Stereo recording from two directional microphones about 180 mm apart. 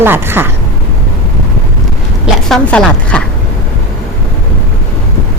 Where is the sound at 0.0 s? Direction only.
10° right (ahead or behind).